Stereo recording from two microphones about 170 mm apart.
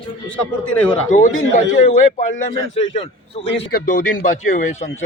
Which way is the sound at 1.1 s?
50° left (ahead or behind).